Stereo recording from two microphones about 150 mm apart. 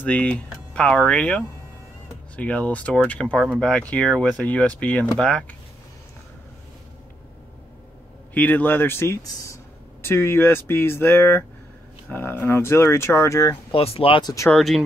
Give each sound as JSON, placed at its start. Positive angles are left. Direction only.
{"t": 0.0, "sound": "speech", "side_deg": 10}
{"t": 8.4, "sound": "speech", "side_deg": 10}
{"t": 13.7, "sound": "speech", "side_deg": 40}
{"t": 14.5, "sound": "speech", "side_deg": 0}